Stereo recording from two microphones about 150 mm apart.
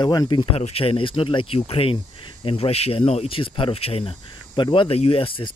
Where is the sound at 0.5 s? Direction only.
40° left (ahead or behind).